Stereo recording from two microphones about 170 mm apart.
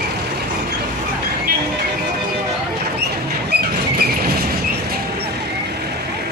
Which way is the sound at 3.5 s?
75° right (ahead or behind).